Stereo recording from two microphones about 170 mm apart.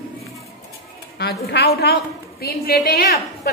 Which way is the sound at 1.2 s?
75° left (ahead or behind).